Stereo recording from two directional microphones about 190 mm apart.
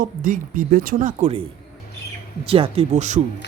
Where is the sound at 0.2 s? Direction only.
45° right (ahead or behind).